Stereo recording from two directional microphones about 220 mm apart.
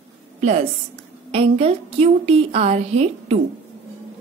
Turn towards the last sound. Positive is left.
turn(degrees=-30)  # may be behind; listen again after turning